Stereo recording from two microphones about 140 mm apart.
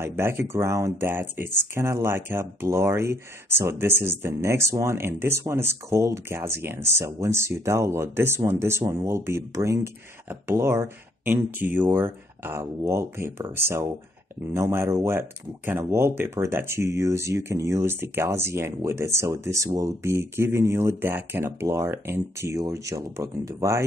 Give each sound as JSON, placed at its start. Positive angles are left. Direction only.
{"t": 0.0, "sound": "speech", "side_deg": -15}